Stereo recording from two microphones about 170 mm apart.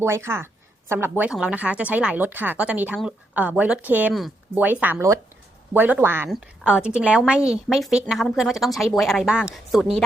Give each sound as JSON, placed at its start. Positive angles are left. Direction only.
{"t": 0.0, "sound": "a woman's voice", "side_deg": -15}